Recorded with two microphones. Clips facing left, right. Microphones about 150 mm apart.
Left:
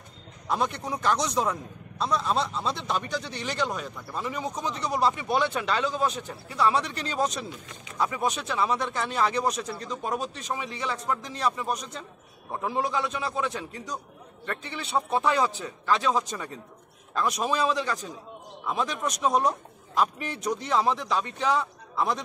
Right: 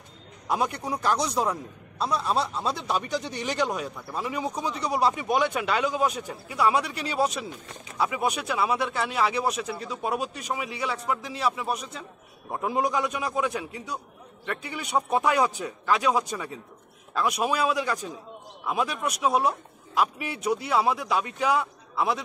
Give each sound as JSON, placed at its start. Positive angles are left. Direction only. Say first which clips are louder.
{"t": 0.5, "sound": "a man's voice", "louder": "right 1 dB", "side_deg": -10}